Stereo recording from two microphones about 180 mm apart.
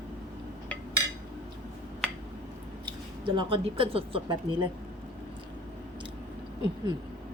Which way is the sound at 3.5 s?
30° right (ahead or behind).